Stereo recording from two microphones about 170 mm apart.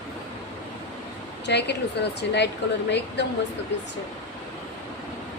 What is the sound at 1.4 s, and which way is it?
A woman's voice, 85° left.